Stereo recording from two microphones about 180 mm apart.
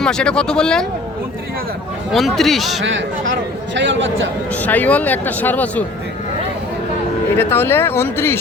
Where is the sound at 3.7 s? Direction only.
90° right.